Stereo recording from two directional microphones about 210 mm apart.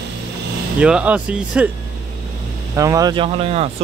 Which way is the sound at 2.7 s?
15° right (ahead or behind).